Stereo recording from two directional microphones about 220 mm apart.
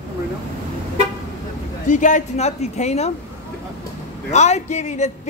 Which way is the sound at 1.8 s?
35° left (ahead or behind).